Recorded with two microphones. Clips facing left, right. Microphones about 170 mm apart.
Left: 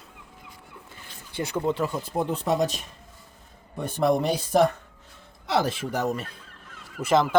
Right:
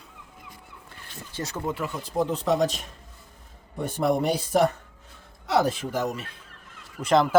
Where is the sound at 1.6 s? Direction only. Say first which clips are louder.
Left 4 dB; 30° left (ahead or behind).